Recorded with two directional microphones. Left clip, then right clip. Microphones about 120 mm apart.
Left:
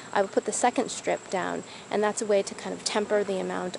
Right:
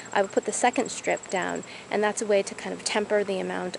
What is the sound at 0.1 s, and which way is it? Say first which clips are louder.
Speech: right 1 dB; centre (ahead or behind).